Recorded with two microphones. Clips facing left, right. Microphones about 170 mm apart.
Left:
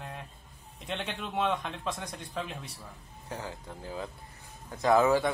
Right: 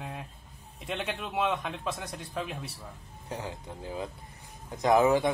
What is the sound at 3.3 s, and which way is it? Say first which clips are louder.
Speech: right 2 dB; 20° right (ahead or behind).